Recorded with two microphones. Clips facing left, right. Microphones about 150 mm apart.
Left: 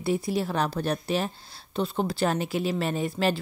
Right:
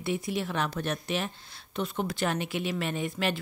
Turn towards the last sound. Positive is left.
turn(degrees=35)  # may be behind; listen again after turning